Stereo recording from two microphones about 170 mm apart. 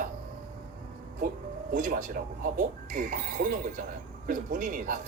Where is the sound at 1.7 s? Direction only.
50° right (ahead or behind).